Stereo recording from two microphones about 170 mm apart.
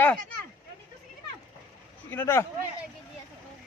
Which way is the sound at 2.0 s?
15° left (ahead or behind).